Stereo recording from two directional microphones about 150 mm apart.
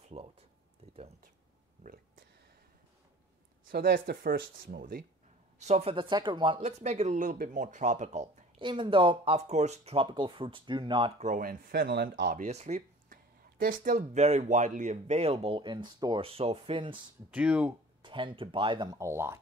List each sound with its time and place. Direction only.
0.1 s speech: 40° right (ahead or behind)
1.8 s speech: 70° right (ahead or behind)
3.7 s speech: 85° right
5.6 s speech: 45° right (ahead or behind)
6.6 s speech: 45° right (ahead or behind)
7.2 s speech: 65° right (ahead or behind)
8.5 s speech: 30° right (ahead or behind)
11.1 s speech: 55° right (ahead or behind); by 12.4 s 85° right
12.4 s a sound: 50° right (ahead or behind)
13.6 s speech: 70° right (ahead or behind)
13.9 s speech: 45° right (ahead or behind)
17.3 s speech: 10° right (ahead or behind)
18.0 s speech: 35° right (ahead or behind)
18.9 s speech: 20° right (ahead or behind)